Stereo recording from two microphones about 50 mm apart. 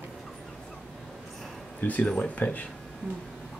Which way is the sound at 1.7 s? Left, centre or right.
Left.